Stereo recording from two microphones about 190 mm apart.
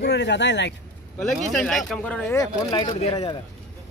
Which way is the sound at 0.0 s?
65° left (ahead or behind).